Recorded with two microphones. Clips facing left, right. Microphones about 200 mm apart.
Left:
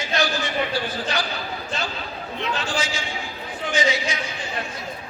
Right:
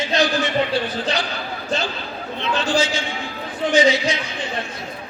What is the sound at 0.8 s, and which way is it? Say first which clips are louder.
Speech: right 4 dB; 20° right (ahead or behind).